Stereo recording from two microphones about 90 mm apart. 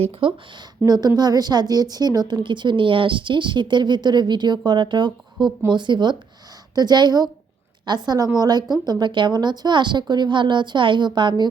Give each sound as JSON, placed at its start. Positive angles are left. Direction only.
{"t": 0.0, "sound": "a woman's voice", "side_deg": -85}